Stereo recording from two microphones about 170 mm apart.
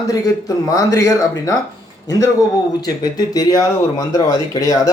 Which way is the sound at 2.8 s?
25° left (ahead or behind).